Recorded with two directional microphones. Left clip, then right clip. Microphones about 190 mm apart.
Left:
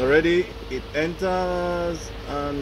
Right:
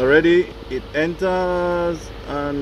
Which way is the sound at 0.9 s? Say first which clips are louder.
Right 4 dB; 30° right (ahead or behind).